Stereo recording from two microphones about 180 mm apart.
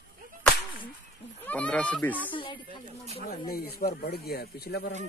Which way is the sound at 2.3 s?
30° left (ahead or behind).